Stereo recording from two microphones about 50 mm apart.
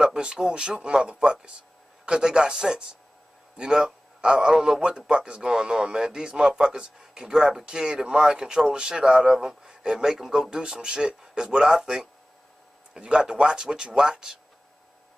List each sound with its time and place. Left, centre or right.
0.0 s a man's voice: centre